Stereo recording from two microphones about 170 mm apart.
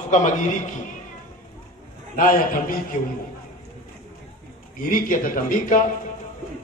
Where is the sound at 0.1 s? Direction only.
45° left (ahead or behind).